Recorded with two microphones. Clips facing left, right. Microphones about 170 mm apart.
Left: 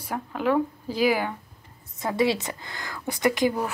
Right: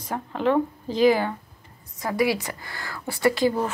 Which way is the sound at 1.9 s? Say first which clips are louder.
Even; 25° left (ahead or behind).